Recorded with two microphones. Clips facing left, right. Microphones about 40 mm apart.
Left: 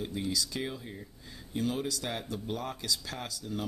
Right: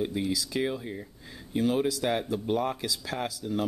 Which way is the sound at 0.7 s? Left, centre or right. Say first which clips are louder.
Right 7 dB; right.